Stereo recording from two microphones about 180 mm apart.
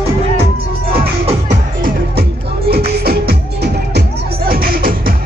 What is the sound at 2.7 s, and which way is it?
Music, 60° right (ahead or behind).